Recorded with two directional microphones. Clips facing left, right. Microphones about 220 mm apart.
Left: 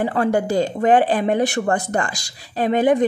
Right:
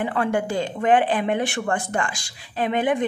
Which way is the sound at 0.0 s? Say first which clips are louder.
Left 4 dB; 40° left (ahead or behind).